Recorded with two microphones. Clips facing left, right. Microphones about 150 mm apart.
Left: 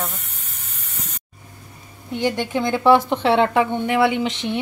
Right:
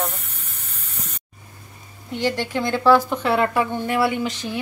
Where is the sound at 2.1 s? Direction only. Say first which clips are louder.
Left 2 dB; 20° left (ahead or behind).